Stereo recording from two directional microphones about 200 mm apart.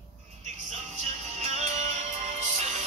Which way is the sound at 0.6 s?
35° right (ahead or behind).